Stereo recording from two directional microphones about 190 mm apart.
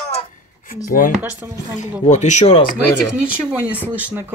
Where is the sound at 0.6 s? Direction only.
45° left (ahead or behind).